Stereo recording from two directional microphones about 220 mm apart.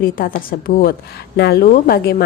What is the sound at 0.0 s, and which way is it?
A woman's voice, 40° left (ahead or behind).